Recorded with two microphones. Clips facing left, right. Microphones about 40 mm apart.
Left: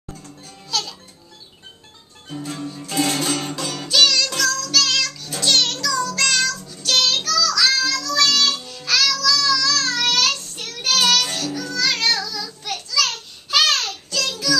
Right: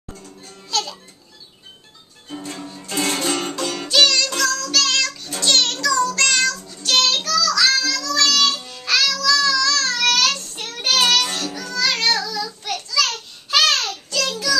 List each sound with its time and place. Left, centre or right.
0.2 s music: centre
2.4 s music: centre
10.5 s child singing: right
11.1 s music: centre
12.9 s child singing: centre